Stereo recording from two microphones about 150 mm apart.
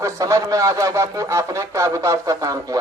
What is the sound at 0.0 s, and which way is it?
Speech, 20° right (ahead or behind).